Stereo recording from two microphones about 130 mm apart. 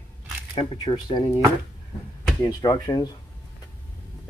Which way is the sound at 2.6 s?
30° left (ahead or behind).